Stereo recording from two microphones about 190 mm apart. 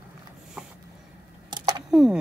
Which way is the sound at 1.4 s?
20° right (ahead or behind).